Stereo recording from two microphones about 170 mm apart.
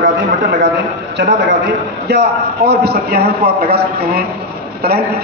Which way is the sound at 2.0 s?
75° right (ahead or behind).